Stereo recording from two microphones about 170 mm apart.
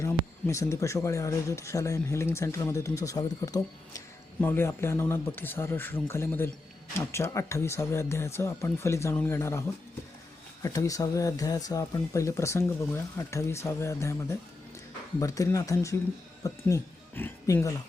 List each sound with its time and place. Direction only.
0.0 s speech: 15° left (ahead or behind)